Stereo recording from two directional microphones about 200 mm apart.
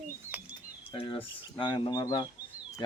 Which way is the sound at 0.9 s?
25° left (ahead or behind).